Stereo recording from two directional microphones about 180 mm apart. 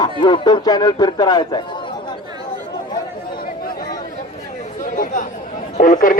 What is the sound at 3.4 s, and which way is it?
Chatter, 50° left (ahead or behind).